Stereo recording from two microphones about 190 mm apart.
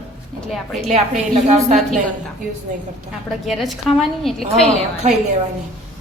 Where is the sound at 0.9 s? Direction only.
35° right (ahead or behind).